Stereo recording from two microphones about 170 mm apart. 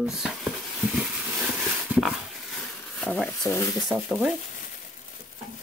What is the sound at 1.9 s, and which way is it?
Dog, 5° right (ahead or behind).